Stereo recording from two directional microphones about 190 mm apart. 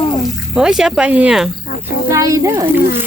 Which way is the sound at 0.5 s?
5° right (ahead or behind).